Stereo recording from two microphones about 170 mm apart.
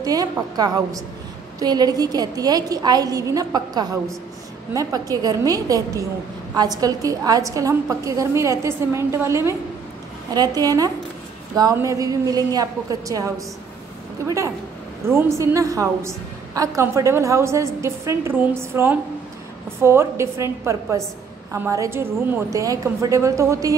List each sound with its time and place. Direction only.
0.0 s a woman's voice: 20° right (ahead or behind)